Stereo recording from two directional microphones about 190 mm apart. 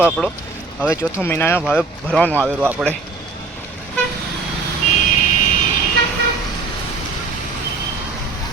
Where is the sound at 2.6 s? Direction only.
5° right (ahead or behind).